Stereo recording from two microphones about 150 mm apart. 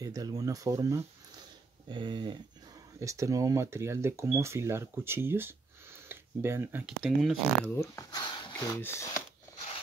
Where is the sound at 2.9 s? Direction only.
20° right (ahead or behind).